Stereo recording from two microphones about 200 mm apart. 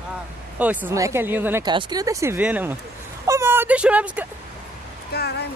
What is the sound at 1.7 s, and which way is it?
Speech, 20° right (ahead or behind).